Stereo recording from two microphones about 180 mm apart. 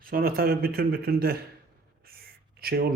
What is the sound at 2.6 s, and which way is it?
Speech, 60° right (ahead or behind).